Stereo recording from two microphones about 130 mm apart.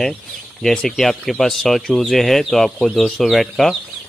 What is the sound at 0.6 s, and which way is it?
Speech, centre (ahead or behind).